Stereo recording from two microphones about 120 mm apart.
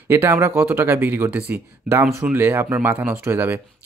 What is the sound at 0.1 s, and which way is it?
Speech, 20° right (ahead or behind).